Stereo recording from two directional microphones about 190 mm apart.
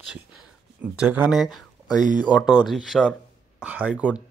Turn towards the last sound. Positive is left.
turn(degrees=-5)  # may be behind; listen again after turning